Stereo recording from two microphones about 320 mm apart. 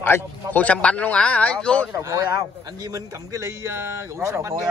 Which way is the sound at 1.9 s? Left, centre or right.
Centre.